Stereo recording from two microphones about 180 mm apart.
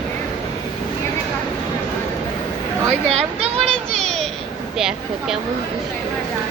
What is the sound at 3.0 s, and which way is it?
Children playing, 35° right (ahead or behind).